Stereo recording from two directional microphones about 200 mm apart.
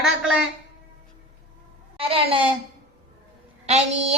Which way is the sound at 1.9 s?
25° right (ahead or behind).